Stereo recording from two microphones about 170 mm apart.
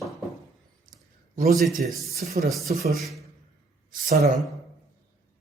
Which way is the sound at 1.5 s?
Centre (ahead or behind).